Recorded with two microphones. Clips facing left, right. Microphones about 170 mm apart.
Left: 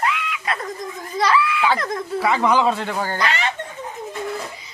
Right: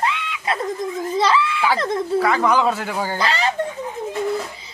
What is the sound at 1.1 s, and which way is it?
Snicker, 25° right (ahead or behind).